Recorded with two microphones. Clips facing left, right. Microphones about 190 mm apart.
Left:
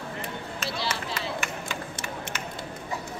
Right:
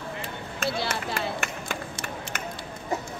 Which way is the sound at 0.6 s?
55° right (ahead or behind).